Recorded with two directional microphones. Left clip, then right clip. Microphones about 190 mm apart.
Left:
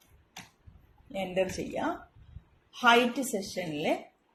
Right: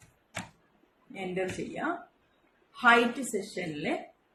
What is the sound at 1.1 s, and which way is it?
Speech, 50° left (ahead or behind).